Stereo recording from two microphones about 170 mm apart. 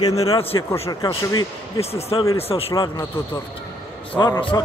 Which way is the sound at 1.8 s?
35° left (ahead or behind).